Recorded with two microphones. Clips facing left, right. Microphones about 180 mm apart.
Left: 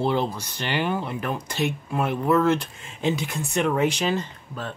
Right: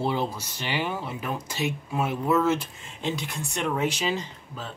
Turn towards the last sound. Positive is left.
turn(degrees=55)  # may be behind; listen again after turning